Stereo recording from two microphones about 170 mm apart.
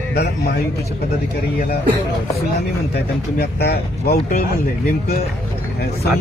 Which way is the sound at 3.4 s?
65° left (ahead or behind).